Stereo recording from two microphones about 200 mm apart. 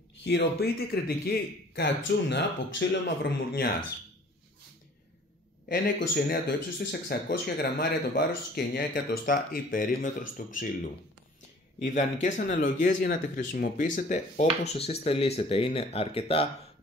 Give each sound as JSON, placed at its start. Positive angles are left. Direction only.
{"t": 0.2, "sound": "speech", "side_deg": 55}
{"t": 5.7, "sound": "speech", "side_deg": 50}